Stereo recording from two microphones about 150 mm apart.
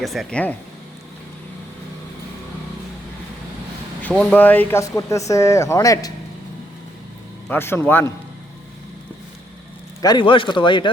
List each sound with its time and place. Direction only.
0.0 s speech: centre (ahead or behind)
4.0 s speech: 5° left (ahead or behind); by 6.1 s 25° left (ahead or behind)
7.4 s speech: 15° left (ahead or behind)
10.0 s speech: 30° left (ahead or behind)